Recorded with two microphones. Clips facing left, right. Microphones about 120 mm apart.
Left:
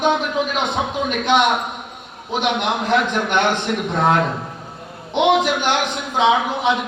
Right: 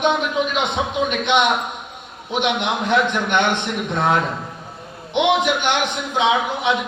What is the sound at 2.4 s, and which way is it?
Speech, centre (ahead or behind).